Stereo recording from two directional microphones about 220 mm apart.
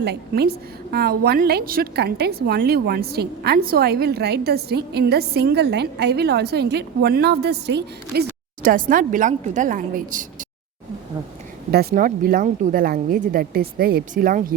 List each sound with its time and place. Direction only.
0.0 s a woman's voice: 45° right (ahead or behind)
11.7 s speech: 45° right (ahead or behind)